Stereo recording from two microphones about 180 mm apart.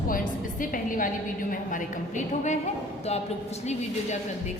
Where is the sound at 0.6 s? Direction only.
50° left (ahead or behind).